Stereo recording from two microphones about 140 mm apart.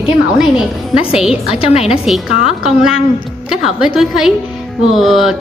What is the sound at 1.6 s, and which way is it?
Speech, 45° left (ahead or behind).